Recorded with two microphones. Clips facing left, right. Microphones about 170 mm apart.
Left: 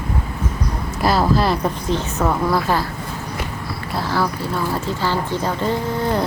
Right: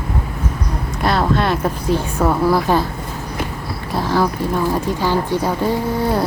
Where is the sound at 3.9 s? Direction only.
15° right (ahead or behind).